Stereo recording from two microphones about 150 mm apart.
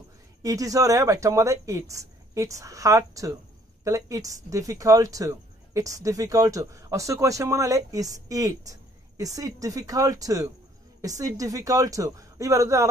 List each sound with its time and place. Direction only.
0.4 s speech: 20° right (ahead or behind)